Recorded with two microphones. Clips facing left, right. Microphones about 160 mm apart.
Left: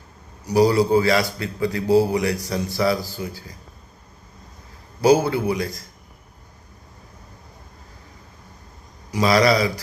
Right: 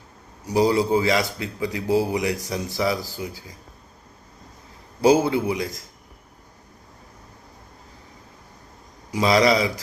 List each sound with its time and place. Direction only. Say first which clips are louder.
0.4 s a man's voice: left 3 dB; 20° right (ahead or behind)
5.0 s a man's voice: left 1 dB; 20° right (ahead or behind)
9.1 s a man's voice: left 1 dB; 20° right (ahead or behind)